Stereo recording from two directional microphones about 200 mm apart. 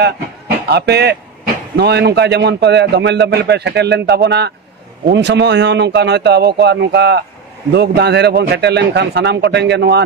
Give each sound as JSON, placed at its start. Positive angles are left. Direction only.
{"t": 0.7, "sound": "a man's voice", "side_deg": -55}